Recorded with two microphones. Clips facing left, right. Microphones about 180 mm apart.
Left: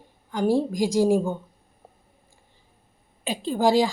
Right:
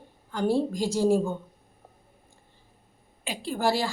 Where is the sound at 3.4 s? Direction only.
15° left (ahead or behind).